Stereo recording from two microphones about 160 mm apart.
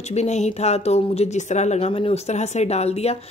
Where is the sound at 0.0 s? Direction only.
45° left (ahead or behind).